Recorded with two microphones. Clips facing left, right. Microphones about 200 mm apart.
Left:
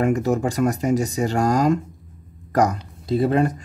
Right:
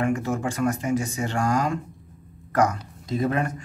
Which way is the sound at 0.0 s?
40° left (ahead or behind).